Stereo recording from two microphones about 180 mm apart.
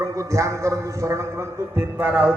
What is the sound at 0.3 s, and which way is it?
A man's voice, 15° right (ahead or behind).